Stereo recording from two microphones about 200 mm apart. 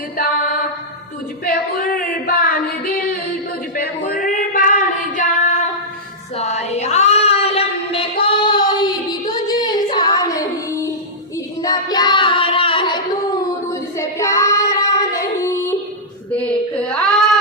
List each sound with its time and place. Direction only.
1.5 s female singing: 45° left (ahead or behind)
6.3 s a sound: 35° left (ahead or behind)
9.3 s child singing: 20° left (ahead or behind)
11.6 s singing: 20° left (ahead or behind)
13.9 s child singing: 15° left (ahead or behind)
16.3 s a sound: 5° left (ahead or behind)